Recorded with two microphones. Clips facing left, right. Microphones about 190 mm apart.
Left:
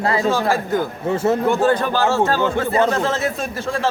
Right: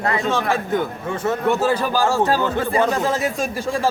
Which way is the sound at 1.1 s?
25° left (ahead or behind).